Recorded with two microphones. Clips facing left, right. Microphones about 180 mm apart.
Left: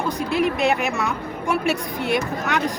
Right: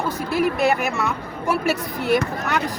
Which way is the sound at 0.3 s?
Centre (ahead or behind).